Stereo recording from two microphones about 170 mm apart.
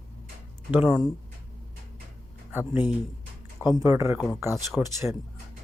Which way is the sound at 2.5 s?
10° right (ahead or behind).